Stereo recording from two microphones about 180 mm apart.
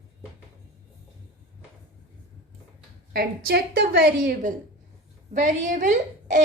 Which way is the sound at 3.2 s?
60° right (ahead or behind).